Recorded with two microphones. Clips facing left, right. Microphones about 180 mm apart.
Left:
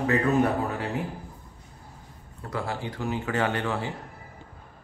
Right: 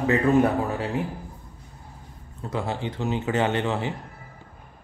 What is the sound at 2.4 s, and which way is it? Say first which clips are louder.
A man's voice: right 3 dB; 20° right (ahead or behind).